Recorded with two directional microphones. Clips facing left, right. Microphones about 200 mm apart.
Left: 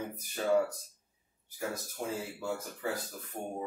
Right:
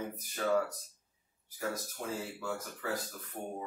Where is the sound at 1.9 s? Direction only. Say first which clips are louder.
Left 2 dB; 25° left (ahead or behind).